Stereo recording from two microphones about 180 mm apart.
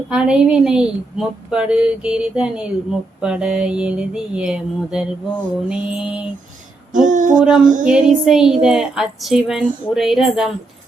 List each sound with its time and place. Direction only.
0.1 s a woman's voice: 5° right (ahead or behind)
6.9 s a sound: 45° right (ahead or behind)
7.4 s a woman's voice: 5° right (ahead or behind)